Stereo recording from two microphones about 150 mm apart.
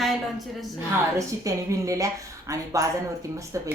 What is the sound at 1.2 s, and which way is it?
A woman's voice, 20° right (ahead or behind).